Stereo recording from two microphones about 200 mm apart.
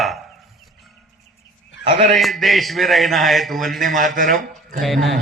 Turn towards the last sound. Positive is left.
turn(degrees=0)  # may be behind; listen again after turning